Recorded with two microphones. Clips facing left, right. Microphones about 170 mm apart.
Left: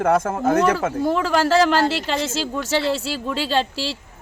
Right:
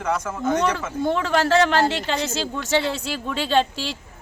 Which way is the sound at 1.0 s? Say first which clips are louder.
Even; 5° left (ahead or behind).